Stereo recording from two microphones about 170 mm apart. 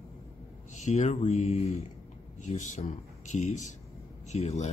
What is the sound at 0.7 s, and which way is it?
Speech, 45° left (ahead or behind).